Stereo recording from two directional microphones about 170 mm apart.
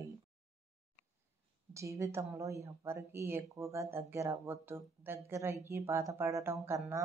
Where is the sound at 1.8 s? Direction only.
15° right (ahead or behind).